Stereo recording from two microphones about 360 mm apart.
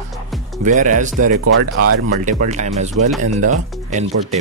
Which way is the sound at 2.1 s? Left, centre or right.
Centre.